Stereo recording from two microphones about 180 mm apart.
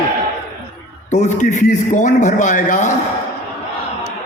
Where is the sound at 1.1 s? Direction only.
40° left (ahead or behind).